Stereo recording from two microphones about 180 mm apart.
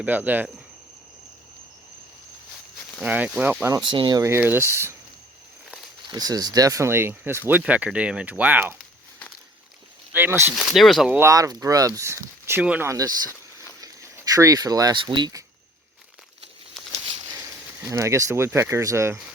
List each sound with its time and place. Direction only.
0.0 s speech: 10° right (ahead or behind)
3.0 s speech: 10° right (ahead or behind)
3.8 s speech: 25° right (ahead or behind)
6.1 s speech: 20° right (ahead or behind)
10.1 s speech: 10° right (ahead or behind)
10.5 s speech: centre (ahead or behind)
11.2 s speech: 20° right (ahead or behind)
16.8 s a sound: centre (ahead or behind)
17.8 s speech: 15° right (ahead or behind)